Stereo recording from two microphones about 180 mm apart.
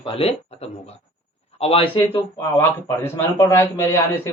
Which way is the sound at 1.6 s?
30° left (ahead or behind).